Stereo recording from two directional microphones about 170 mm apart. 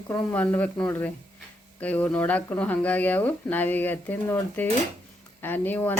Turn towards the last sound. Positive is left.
turn(degrees=10)  # may be behind; listen again after turning